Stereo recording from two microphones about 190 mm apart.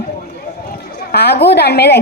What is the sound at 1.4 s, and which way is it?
Speech, 60° left (ahead or behind).